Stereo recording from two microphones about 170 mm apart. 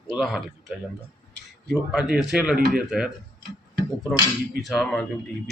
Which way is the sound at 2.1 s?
5° right (ahead or behind).